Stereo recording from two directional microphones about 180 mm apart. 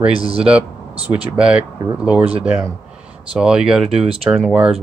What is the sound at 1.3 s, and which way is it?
Speech, 5° right (ahead or behind).